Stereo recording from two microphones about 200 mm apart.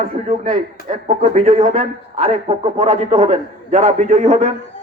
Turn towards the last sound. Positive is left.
turn(degrees=-35)  # may be behind; listen again after turning